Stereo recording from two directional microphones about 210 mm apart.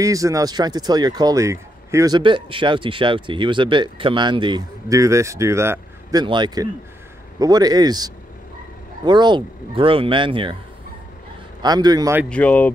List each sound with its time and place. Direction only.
0.0 s speech: 15° right (ahead or behind)
11.6 s speech: 20° right (ahead or behind)
12.3 s speech: 5° left (ahead or behind)